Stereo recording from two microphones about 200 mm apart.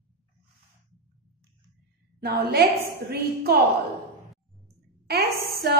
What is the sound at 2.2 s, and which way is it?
A woman's voice, 50° right (ahead or behind).